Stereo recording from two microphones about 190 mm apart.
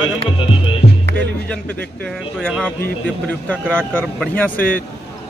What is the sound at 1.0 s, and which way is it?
Music, 65° right (ahead or behind).